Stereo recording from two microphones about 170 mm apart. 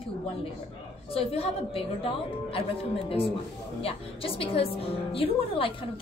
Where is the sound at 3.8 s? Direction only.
35° left (ahead or behind).